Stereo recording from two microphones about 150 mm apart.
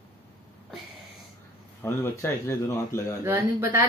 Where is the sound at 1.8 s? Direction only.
15° left (ahead or behind).